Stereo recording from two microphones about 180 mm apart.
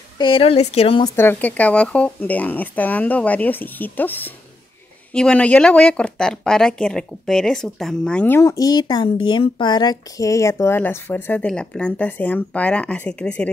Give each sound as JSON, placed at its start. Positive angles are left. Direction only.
{"t": 0.2, "sound": "a woman's voice", "side_deg": 30}
{"t": 1.1, "sound": "speech", "side_deg": 10}